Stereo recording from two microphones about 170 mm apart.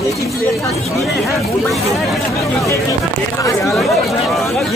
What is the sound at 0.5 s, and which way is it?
Speech, centre (ahead or behind).